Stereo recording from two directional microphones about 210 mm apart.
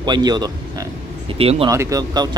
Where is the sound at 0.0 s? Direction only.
20° right (ahead or behind).